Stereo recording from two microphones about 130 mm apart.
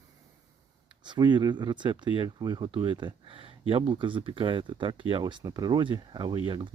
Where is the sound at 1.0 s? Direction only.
35° right (ahead or behind).